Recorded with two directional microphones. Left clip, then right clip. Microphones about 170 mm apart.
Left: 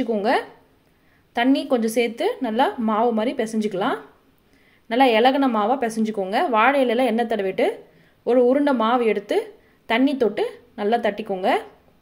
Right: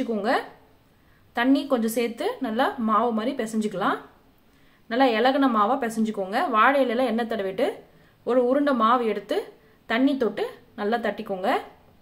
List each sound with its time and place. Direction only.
0.0 s a woman's voice: 20° left (ahead or behind)